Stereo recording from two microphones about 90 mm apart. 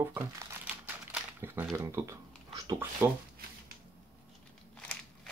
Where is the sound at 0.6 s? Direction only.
20° right (ahead or behind).